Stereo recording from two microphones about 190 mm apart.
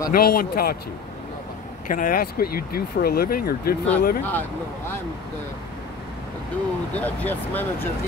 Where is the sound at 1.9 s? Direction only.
45° left (ahead or behind).